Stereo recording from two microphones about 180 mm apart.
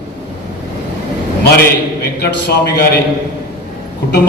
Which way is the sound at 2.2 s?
60° left (ahead or behind).